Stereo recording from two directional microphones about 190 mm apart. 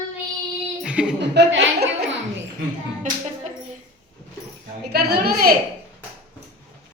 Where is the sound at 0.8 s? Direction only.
5° right (ahead or behind).